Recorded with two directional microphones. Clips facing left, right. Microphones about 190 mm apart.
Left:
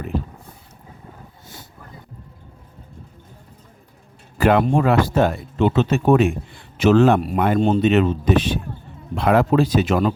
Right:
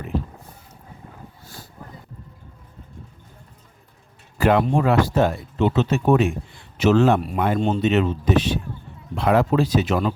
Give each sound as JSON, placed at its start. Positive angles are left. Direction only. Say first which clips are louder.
{"t": 4.4, "sound": "speech", "louder": "left 2 dB", "side_deg": 60}